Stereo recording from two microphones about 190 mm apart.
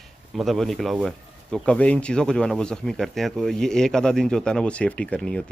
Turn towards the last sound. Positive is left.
turn(degrees=5)  # may be behind; listen again after turning